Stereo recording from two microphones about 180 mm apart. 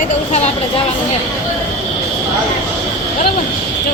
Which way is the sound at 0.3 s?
35° left (ahead or behind).